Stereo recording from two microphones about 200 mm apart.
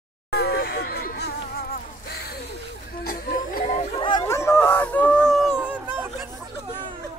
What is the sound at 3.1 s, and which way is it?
Music, 45° left (ahead or behind).